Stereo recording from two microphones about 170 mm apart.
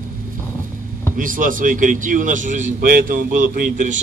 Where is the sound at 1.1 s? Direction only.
55° right (ahead or behind).